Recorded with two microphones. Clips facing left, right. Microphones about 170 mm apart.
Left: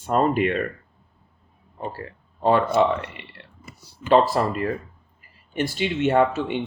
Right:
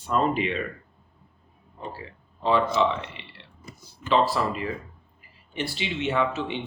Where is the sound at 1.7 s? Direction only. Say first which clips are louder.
Left 5 dB; 50° left (ahead or behind).